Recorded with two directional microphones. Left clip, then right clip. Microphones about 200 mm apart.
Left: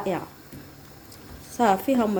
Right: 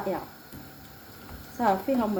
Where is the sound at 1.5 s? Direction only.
50° left (ahead or behind).